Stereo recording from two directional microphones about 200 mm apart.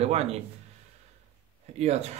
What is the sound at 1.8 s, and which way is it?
Speech, 30° right (ahead or behind).